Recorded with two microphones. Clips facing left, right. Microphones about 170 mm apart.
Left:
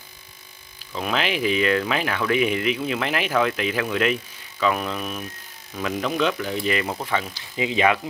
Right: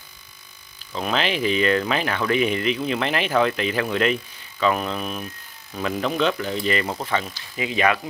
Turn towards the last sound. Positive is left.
turn(degrees=20)  # may be behind; listen again after turning